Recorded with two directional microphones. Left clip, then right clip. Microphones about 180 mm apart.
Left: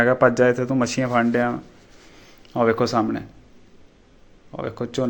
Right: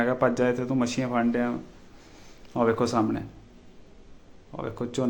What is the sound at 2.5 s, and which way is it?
Speech, 15° left (ahead or behind).